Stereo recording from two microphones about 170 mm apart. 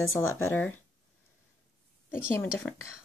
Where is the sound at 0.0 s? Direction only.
15° left (ahead or behind).